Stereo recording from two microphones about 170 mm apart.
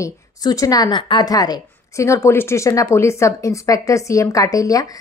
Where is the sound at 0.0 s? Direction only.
20° left (ahead or behind).